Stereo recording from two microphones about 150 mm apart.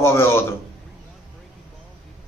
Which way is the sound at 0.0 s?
15° left (ahead or behind).